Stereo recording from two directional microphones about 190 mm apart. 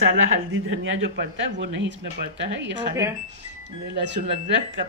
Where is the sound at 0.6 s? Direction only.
90° right; by 3.0 s 65° right (ahead or behind).